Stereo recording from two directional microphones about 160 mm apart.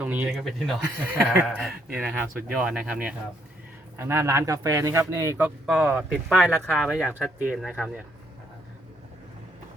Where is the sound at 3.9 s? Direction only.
15° right (ahead or behind).